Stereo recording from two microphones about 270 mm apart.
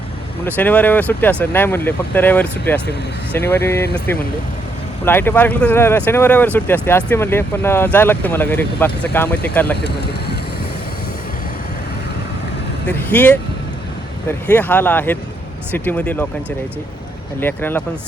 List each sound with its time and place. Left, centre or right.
0.4 s speech: centre
5.0 s speech: centre
9.8 s speech: left
12.8 s speech: centre
17.4 s speech: centre